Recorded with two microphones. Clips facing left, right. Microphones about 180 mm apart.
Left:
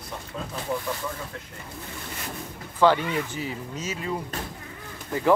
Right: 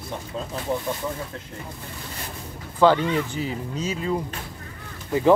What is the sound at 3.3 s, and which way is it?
Speech, 20° right (ahead or behind).